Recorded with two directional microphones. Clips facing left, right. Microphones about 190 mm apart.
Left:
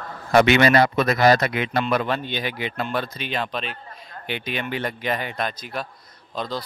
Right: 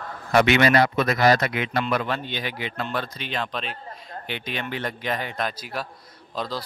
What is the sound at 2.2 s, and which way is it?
A man's voice, 15° left (ahead or behind).